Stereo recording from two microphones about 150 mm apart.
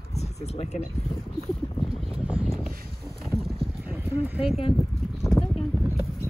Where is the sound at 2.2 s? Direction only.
10° right (ahead or behind).